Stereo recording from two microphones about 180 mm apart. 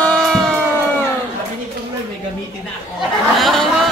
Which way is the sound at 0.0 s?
5° left (ahead or behind).